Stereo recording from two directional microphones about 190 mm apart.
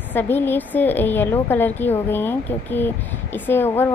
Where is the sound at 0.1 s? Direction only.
10° left (ahead or behind).